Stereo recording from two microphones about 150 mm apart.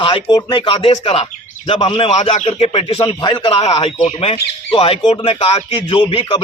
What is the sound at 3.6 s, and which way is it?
A man's voice, 45° left (ahead or behind).